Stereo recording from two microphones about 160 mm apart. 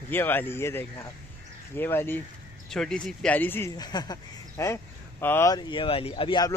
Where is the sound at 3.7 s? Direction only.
25° left (ahead or behind).